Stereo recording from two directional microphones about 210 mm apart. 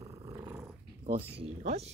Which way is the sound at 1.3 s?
30° right (ahead or behind).